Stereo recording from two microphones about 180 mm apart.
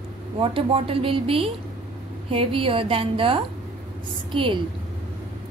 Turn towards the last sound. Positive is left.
turn(degrees=-30)  # may be behind; listen again after turning